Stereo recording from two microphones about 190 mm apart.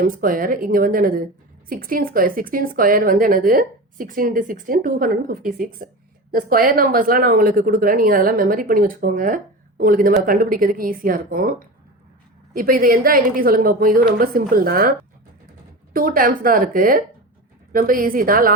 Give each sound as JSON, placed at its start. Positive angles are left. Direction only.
{"t": 0.0, "sound": "a woman's voice", "side_deg": -45}
{"t": 12.5, "sound": "a woman's voice", "side_deg": -50}